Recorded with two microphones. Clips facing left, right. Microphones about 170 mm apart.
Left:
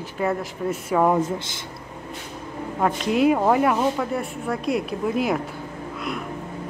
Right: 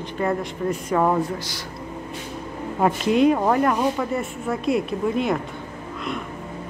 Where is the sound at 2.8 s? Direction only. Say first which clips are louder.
Right 2 dB; 10° right (ahead or behind).